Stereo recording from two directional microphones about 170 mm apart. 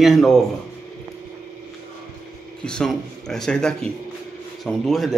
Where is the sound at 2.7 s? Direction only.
5° left (ahead or behind).